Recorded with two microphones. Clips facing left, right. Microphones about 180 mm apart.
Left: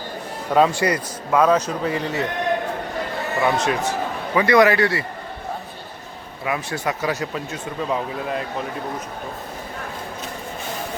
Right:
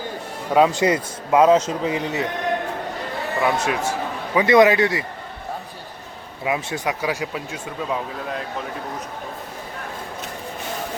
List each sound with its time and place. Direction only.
0.5 s a man's voice: 15° right (ahead or behind)
3.4 s speech: 5° right (ahead or behind)
4.4 s a man's voice: 20° right (ahead or behind)
6.4 s speech: 20° right (ahead or behind); by 8.4 s centre (ahead or behind)